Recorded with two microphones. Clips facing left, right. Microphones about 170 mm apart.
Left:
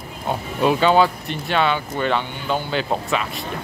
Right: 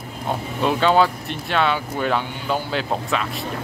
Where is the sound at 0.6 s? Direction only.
5° left (ahead or behind).